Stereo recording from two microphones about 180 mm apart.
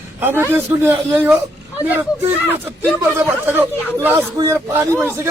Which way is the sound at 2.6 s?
15° right (ahead or behind).